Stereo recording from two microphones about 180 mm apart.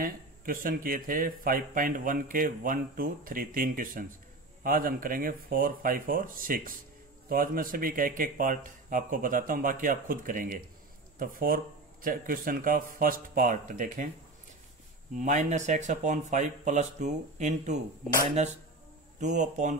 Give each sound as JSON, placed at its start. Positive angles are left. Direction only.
{"t": 0.0, "sound": "speech", "side_deg": -50}
{"t": 15.1, "sound": "speech", "side_deg": -40}